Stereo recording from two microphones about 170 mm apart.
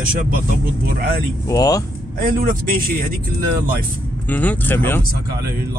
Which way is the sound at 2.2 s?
55° right (ahead or behind).